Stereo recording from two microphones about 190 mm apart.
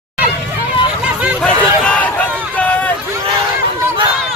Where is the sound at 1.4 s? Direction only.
5° left (ahead or behind).